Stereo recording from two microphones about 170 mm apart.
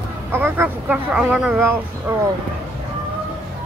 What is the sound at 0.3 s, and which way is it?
Speech, 10° right (ahead or behind).